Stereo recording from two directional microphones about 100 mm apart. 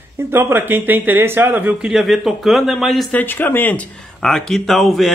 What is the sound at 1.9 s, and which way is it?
A man's voice, centre (ahead or behind).